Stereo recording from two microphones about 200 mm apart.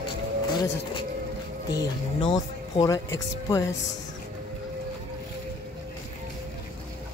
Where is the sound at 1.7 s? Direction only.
25° left (ahead or behind).